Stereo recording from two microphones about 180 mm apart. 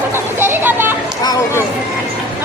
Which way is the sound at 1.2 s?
20° left (ahead or behind).